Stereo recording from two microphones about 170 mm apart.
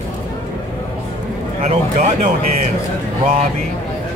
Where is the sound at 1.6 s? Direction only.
40° right (ahead or behind).